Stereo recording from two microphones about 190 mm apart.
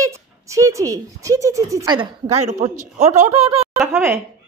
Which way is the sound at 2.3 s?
35° right (ahead or behind).